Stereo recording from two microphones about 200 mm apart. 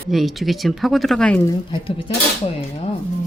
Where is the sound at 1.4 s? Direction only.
20° left (ahead or behind).